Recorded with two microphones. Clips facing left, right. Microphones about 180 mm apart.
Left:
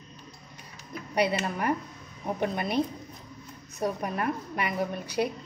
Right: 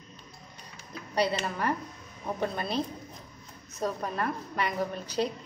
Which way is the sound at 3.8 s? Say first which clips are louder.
Left 2 dB; 15° left (ahead or behind).